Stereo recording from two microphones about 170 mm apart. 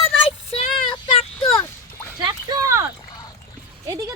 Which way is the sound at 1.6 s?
15° left (ahead or behind).